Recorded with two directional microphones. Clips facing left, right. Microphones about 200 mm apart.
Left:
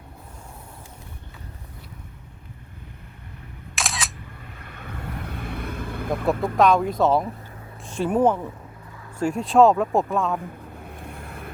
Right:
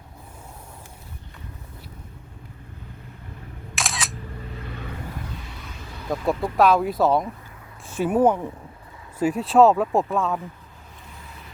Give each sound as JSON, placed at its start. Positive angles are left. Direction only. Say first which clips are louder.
{"t": 3.8, "sound": "single-lens reflex camera", "louder": "even", "side_deg": 0}
{"t": 4.6, "sound": "vehicle", "louder": "left 1 dB", "side_deg": 55}
{"t": 6.6, "sound": "speech", "louder": "even", "side_deg": -5}
{"t": 10.8, "sound": "vehicle", "louder": "left 8 dB", "side_deg": 60}